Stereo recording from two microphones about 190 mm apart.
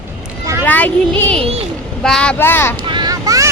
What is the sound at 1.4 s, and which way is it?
Speech, 30° right (ahead or behind).